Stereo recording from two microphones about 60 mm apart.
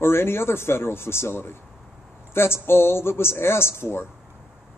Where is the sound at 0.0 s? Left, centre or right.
Left.